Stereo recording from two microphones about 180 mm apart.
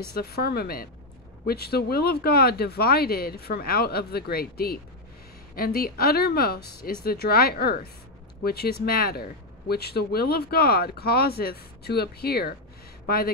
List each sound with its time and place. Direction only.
0.1 s speech: 60° left (ahead or behind)